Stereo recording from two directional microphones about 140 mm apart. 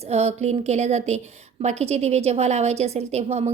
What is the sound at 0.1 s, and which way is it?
A woman's voice, 50° right (ahead or behind).